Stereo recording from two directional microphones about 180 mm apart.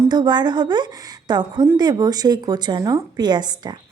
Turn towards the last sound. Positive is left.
turn(degrees=-25)  # may be behind; listen again after turning